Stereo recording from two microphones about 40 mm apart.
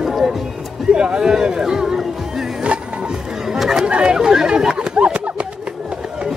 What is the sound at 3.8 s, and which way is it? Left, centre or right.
Speech, right.